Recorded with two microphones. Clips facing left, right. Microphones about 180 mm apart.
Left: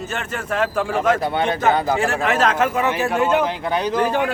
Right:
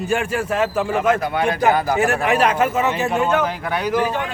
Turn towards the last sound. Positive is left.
turn(degrees=20)  # may be behind; listen again after turning